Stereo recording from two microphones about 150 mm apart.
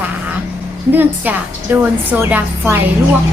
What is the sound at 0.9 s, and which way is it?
A woman's voice, 10° right (ahead or behind).